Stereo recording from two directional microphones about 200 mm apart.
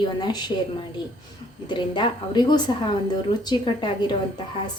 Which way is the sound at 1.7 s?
25° left (ahead or behind).